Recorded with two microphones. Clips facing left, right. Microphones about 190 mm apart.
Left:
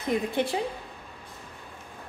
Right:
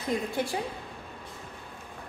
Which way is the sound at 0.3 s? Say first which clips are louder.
Left 3 dB; 25° left (ahead or behind).